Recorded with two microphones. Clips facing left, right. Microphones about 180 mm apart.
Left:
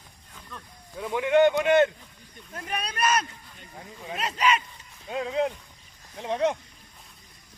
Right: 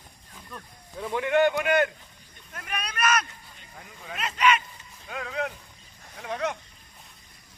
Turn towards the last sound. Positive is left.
turn(degrees=30)  # may be behind; listen again after turning